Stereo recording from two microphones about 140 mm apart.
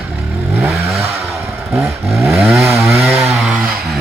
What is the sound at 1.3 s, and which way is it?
Chainsaw, 20° right (ahead or behind).